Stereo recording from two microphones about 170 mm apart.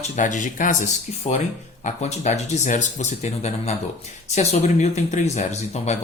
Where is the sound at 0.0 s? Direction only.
45° left (ahead or behind).